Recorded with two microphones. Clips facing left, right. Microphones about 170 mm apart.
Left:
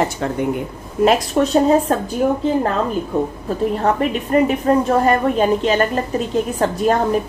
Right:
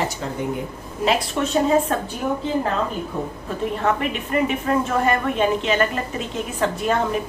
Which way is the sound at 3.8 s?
40° left (ahead or behind).